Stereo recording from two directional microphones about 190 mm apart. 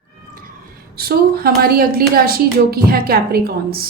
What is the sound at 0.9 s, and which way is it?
A woman's voice, 50° right (ahead or behind).